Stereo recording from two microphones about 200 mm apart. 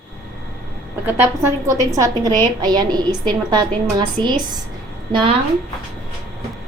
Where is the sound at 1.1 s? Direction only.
10° right (ahead or behind).